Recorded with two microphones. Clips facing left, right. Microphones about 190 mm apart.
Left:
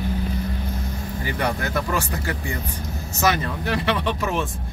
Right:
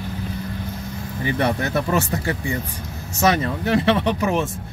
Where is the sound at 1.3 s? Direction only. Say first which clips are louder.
Right 4 dB; 25° right (ahead or behind).